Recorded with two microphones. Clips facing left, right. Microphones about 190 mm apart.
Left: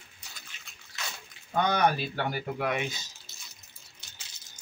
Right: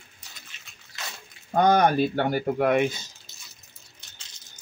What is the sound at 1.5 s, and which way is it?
Speech, 45° right (ahead or behind).